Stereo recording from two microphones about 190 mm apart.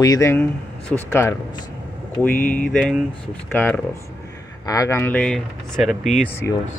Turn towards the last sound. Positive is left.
turn(degrees=15)  # may be behind; listen again after turning